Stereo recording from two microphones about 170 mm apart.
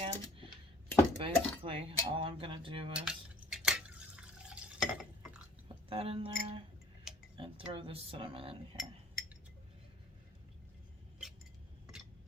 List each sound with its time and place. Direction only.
0.0 s a sound: 30° right (ahead or behind)
1.2 s speech: 30° right (ahead or behind)
2.9 s drip: 5° right (ahead or behind)
5.9 s speech: 35° right (ahead or behind)
7.3 s a sound: 30° right (ahead or behind)
7.7 s speech: 35° right (ahead or behind)